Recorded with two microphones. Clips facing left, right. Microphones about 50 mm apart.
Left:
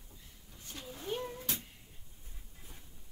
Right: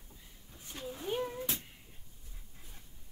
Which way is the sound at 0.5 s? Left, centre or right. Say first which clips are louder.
Right 1 dB; centre.